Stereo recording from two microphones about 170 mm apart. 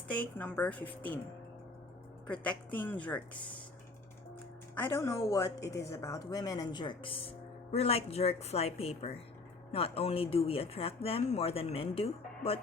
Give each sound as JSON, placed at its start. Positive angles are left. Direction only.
{"t": 0.1, "sound": "speech", "side_deg": 10}
{"t": 2.2, "sound": "speech", "side_deg": 5}
{"t": 4.7, "sound": "speech", "side_deg": 15}